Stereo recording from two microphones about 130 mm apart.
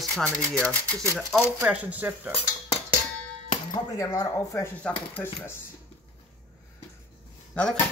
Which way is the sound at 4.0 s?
25° left (ahead or behind).